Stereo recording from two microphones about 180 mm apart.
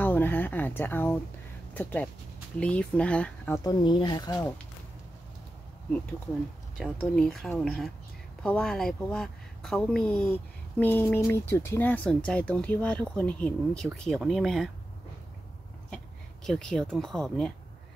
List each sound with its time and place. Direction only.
0.0 s a sound: 10° left (ahead or behind)
1.7 s speech: 10° left (ahead or behind)
3.6 s speech: 25° left (ahead or behind)
6.8 s a woman's voice: 5° left (ahead or behind)
16.4 s a woman's voice: centre (ahead or behind)